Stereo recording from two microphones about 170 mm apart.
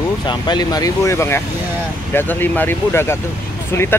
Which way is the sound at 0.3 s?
25° left (ahead or behind).